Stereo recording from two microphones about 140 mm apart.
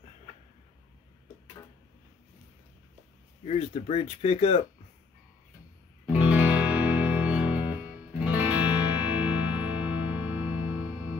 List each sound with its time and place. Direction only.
3.4 s speech: 50° left (ahead or behind)
6.0 s music: 10° right (ahead or behind)